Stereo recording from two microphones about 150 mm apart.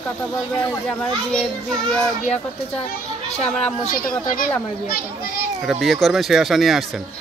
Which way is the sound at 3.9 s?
75° left (ahead or behind).